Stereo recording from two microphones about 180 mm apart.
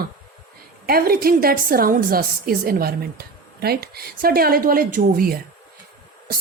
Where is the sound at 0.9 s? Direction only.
55° right (ahead or behind).